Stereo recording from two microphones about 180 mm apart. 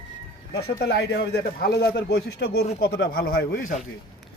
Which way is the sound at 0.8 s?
65° left (ahead or behind).